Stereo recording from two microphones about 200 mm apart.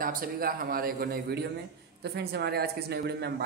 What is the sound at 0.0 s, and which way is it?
Speech, 45° right (ahead or behind).